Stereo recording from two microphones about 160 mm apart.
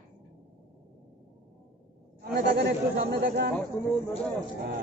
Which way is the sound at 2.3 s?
60° right (ahead or behind).